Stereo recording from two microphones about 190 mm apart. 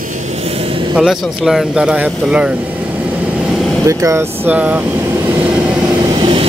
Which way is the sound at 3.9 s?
15° right (ahead or behind).